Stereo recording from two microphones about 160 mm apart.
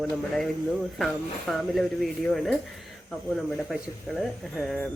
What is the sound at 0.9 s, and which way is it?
Speech, centre (ahead or behind).